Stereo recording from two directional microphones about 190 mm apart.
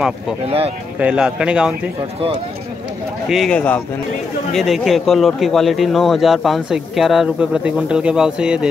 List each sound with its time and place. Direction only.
0.5 s speech: 30° right (ahead or behind)
0.9 s a man's voice: 5° right (ahead or behind)
3.3 s a man's voice: centre (ahead or behind)